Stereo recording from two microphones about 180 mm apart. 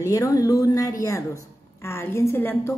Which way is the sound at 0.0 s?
15° left (ahead or behind).